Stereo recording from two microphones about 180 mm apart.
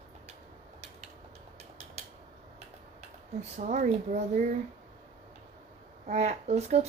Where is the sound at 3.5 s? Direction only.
45° right (ahead or behind).